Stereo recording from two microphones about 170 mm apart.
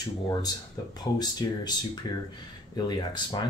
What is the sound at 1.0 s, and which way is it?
Speech, 25° left (ahead or behind).